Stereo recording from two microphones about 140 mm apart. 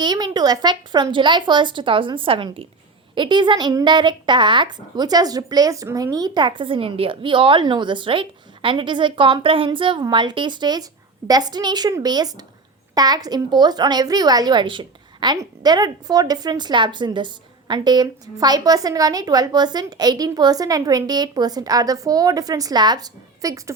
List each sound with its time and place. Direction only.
0.0 s a woman's voice: 30° right (ahead or behind)